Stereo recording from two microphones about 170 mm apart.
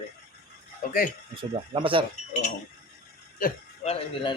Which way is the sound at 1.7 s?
30° right (ahead or behind).